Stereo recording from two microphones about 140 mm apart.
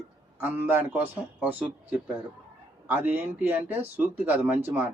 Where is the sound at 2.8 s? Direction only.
15° right (ahead or behind).